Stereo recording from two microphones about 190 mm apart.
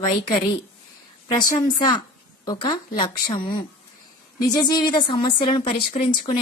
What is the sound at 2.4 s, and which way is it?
A woman's voice, 20° left (ahead or behind).